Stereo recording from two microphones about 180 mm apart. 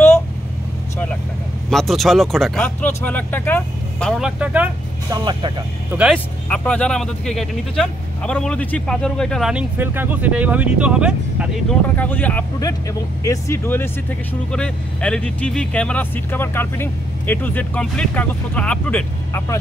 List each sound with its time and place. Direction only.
1.7 s speech: centre (ahead or behind)
4.4 s speech: 10° right (ahead or behind)
5.1 s speech: 25° right (ahead or behind)
6.1 s speech: 5° left (ahead or behind)
12.0 s speech: 10° left (ahead or behind)